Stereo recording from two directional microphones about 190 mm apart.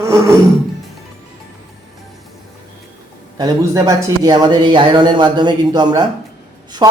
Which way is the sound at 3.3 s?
15° right (ahead or behind).